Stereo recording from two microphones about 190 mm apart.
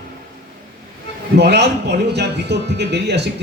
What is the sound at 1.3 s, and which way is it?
Speech, 60° right (ahead or behind).